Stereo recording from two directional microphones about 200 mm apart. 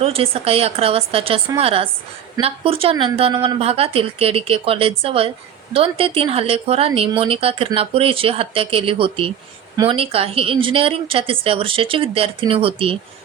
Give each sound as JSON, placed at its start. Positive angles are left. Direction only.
{"t": 0.0, "sound": "speech", "side_deg": -30}